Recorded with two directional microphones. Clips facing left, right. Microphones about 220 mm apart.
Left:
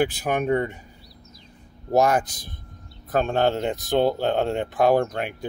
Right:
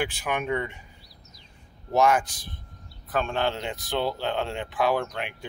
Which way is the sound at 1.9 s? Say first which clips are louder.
Left 2 dB; 40° left (ahead or behind).